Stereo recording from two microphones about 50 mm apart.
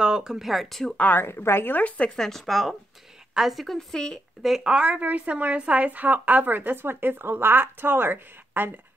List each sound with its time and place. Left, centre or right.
0.0 s speech: centre
1.1 s a woman's voice: left
1.8 s speech: left
2.0 s speech: centre
3.6 s speech: centre
4.6 s a woman's voice: centre; by 8.8 s right